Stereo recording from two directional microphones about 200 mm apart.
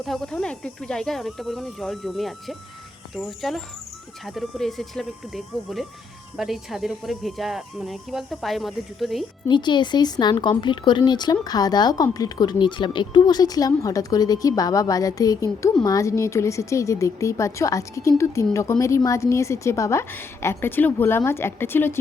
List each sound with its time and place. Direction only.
0.0 s speech: centre (ahead or behind)
9.5 s a woman's voice: 25° left (ahead or behind)